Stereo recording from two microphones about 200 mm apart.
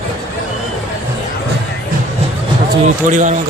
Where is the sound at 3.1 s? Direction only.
35° right (ahead or behind).